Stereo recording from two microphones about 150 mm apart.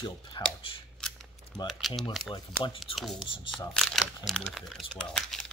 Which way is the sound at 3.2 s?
35° left (ahead or behind).